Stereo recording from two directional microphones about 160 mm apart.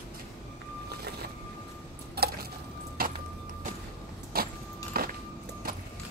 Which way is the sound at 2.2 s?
80° right.